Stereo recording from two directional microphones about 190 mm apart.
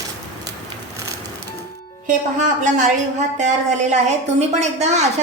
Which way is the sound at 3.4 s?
40° right (ahead or behind).